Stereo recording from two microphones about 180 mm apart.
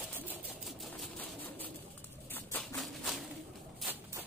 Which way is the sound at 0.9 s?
10° left (ahead or behind).